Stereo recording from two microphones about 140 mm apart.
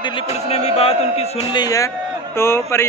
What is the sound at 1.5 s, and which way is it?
Speech, 25° left (ahead or behind).